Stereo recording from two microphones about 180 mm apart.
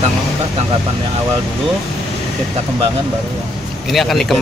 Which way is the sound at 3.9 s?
Centre (ahead or behind).